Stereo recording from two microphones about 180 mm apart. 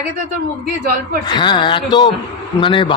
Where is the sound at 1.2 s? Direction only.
25° left (ahead or behind).